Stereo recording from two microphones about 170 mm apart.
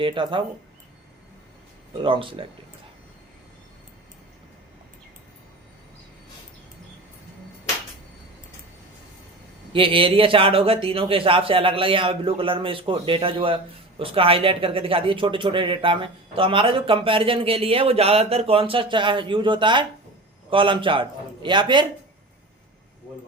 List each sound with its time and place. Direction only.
0.0 s a man's voice: 30° right (ahead or behind)
2.0 s speech: 30° right (ahead or behind)
9.7 s a man's voice: 30° right (ahead or behind)